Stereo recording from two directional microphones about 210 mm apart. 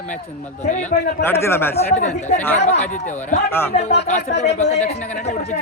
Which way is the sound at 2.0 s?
35° left (ahead or behind).